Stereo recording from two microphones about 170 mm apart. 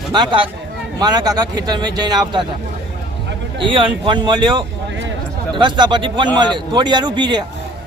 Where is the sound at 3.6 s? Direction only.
30° right (ahead or behind).